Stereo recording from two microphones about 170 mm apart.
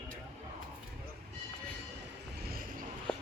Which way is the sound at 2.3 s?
65° right (ahead or behind).